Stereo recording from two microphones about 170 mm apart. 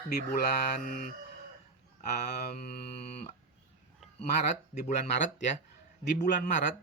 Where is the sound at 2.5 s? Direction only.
60° left (ahead or behind).